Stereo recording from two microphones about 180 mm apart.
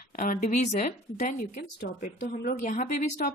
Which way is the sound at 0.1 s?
50° left (ahead or behind).